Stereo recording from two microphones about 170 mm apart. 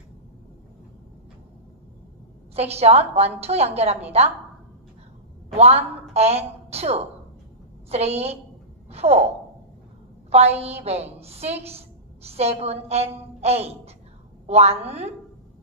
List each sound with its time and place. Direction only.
2.5 s a woman's voice: 40° right (ahead or behind)
5.6 s a woman's voice: 40° right (ahead or behind)
10.3 s a woman's voice: 40° right (ahead or behind)